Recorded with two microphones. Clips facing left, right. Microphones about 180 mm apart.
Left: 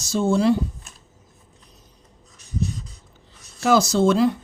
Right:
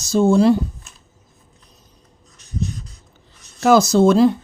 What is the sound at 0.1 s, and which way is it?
Speech, 45° right (ahead or behind).